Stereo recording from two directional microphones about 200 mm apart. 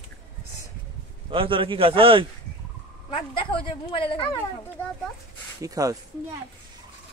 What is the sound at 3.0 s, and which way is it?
Speech, 25° left (ahead or behind).